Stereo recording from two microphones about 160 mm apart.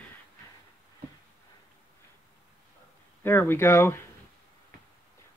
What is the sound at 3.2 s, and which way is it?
Speech, 15° left (ahead or behind).